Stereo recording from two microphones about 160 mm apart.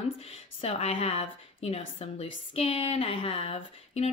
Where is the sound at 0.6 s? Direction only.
35° left (ahead or behind).